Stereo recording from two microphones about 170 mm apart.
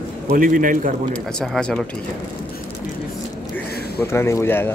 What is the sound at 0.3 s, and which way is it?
Speech, 55° right (ahead or behind).